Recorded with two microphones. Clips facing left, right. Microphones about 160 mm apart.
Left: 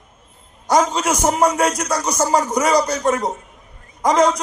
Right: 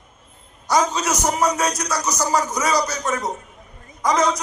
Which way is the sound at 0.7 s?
55° left (ahead or behind).